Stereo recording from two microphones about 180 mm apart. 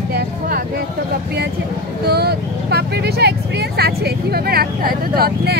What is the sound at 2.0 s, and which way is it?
Speech, 60° right (ahead or behind).